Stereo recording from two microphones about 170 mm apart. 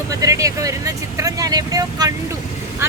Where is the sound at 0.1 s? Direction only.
20° right (ahead or behind).